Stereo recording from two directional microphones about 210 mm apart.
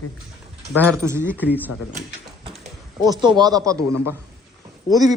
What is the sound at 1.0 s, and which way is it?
Speech, 10° right (ahead or behind).